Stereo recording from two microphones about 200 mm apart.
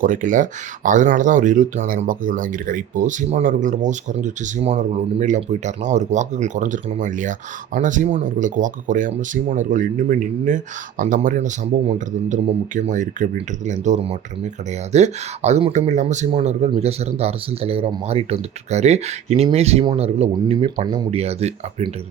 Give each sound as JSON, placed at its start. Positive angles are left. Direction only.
{"t": 0.0, "sound": "speech", "side_deg": -40}